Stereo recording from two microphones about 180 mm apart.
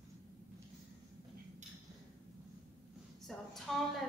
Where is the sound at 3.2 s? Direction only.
Centre (ahead or behind).